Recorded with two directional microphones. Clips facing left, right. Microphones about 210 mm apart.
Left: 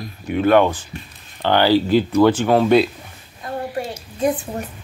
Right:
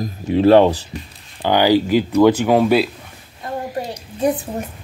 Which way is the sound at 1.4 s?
15° right (ahead or behind).